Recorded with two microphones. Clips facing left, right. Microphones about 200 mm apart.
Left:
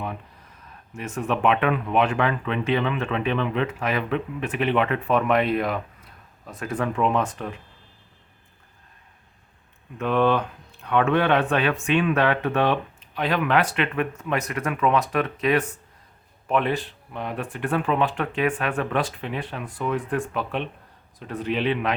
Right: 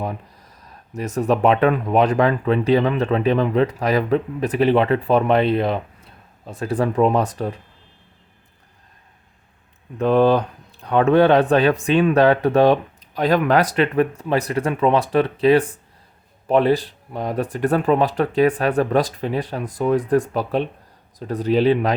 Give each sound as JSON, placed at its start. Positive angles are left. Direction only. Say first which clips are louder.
{"t": 0.0, "sound": "speech", "louder": "right 5 dB", "side_deg": -40}
{"t": 10.0, "sound": "speech", "louder": "right 6 dB", "side_deg": -35}